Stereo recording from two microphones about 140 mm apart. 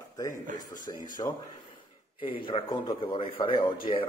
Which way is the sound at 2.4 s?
40° left (ahead or behind).